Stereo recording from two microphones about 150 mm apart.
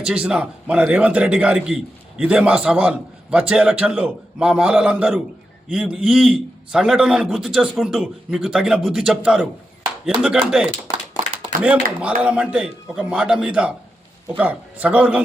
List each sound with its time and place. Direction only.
0.0 s a man's voice: 5° right (ahead or behind)
10.9 s a sound: 20° left (ahead or behind)
11.6 s a man's voice: 10° right (ahead or behind)